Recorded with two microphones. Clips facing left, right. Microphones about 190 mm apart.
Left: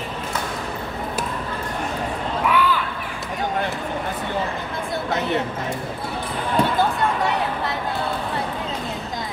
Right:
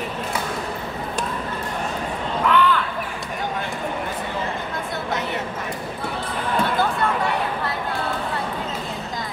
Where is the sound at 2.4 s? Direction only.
10° left (ahead or behind).